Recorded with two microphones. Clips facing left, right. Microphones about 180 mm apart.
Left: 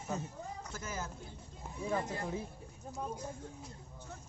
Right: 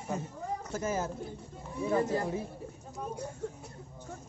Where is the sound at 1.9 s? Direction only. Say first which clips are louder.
Right 8 dB; 40° right (ahead or behind).